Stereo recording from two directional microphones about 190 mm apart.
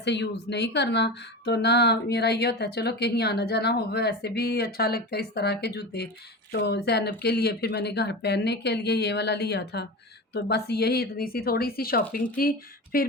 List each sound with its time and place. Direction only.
0.0 s a woman's voice: 65° left (ahead or behind)